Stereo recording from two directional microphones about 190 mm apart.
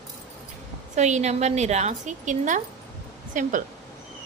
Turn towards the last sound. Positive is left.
turn(degrees=-45)  # may be behind; listen again after turning